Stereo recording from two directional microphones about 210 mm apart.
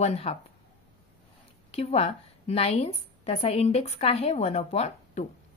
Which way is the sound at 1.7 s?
30° left (ahead or behind).